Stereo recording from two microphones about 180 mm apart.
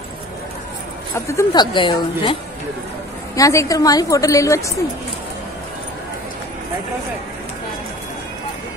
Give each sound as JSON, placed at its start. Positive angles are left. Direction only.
{"t": 1.1, "sound": "a woman's voice", "side_deg": 15}
{"t": 3.3, "sound": "a woman's voice", "side_deg": 20}